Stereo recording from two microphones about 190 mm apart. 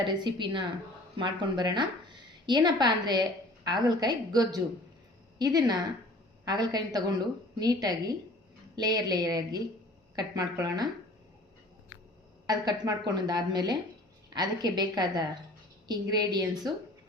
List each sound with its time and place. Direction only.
0.0 s a woman's voice: 25° right (ahead or behind)
12.5 s a woman's voice: 20° right (ahead or behind)